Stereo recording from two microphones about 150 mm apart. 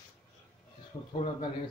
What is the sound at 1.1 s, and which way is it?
Speech, 40° left (ahead or behind).